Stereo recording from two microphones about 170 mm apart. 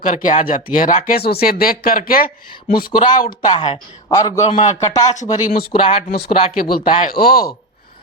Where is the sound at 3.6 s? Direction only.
25° left (ahead or behind).